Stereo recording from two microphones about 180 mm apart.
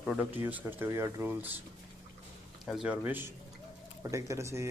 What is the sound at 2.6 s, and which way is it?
Speech, centre (ahead or behind).